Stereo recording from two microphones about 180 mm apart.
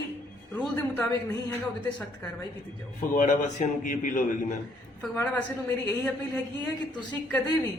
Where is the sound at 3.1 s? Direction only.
45° left (ahead or behind).